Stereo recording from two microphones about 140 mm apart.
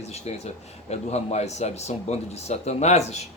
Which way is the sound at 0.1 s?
50° left (ahead or behind).